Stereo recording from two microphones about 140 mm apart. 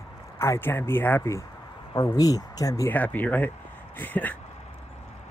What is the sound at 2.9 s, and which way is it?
Speech, 10° left (ahead or behind).